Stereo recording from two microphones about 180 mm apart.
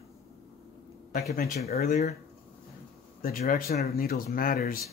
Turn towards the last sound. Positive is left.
turn(degrees=50)  # may be behind; listen again after turning